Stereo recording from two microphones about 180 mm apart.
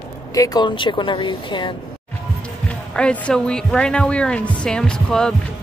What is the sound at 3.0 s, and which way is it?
Speech, 5° left (ahead or behind).